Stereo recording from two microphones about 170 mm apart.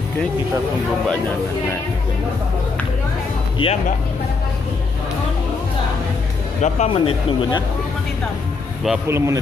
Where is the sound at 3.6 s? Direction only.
30° left (ahead or behind).